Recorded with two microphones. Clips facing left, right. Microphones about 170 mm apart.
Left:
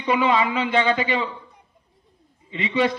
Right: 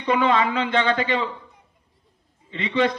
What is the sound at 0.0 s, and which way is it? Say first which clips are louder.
Speech: even; 10° left (ahead or behind).